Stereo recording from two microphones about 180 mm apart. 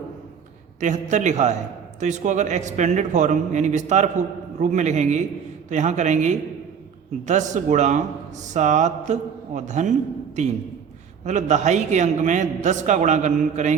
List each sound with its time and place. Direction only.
0.8 s a man's voice: 40° right (ahead or behind)